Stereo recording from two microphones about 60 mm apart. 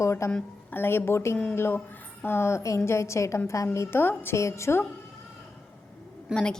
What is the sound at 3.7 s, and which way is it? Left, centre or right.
Speech, left.